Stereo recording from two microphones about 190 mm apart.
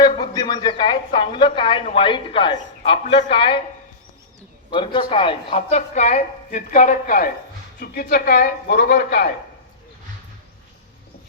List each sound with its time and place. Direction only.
0.1 s speech: 20° left (ahead or behind)
4.7 s speech: 25° left (ahead or behind)
5.7 s a woman's voice: 40° left (ahead or behind)